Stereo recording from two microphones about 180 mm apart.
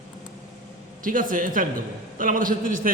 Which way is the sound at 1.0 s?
50° right (ahead or behind).